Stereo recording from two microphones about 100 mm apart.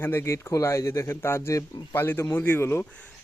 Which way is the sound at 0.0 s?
25° left (ahead or behind).